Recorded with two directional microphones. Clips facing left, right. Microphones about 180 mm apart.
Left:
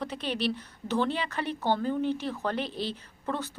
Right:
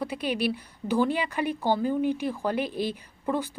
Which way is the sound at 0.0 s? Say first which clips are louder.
Right 3 dB; 10° right (ahead or behind).